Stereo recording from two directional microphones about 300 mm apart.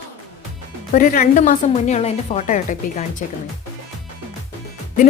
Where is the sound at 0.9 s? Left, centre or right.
Left.